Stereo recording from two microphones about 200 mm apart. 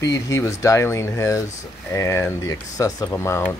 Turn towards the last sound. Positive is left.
turn(degrees=15)  # may be behind; listen again after turning